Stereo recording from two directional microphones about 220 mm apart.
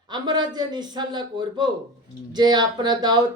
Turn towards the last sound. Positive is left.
turn(degrees=-20)  # may be behind; listen again after turning